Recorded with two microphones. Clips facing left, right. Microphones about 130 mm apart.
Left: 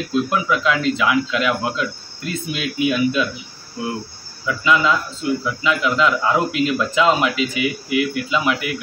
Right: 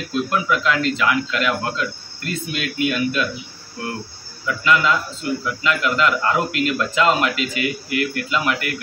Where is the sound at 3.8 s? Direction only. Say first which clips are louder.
Left 3 dB; 15° left (ahead or behind).